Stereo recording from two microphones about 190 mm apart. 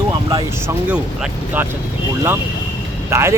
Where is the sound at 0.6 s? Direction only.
10° right (ahead or behind).